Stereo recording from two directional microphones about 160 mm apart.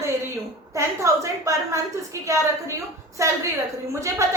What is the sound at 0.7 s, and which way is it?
A woman's voice, 20° right (ahead or behind).